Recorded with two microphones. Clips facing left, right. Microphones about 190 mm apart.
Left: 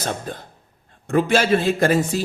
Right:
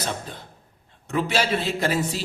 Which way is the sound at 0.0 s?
45° left (ahead or behind).